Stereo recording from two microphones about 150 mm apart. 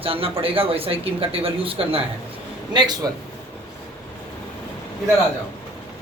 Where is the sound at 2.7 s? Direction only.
25° right (ahead or behind).